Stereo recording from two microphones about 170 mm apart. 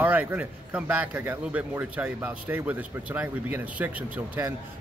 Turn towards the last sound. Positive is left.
turn(degrees=-10)  # may be behind; listen again after turning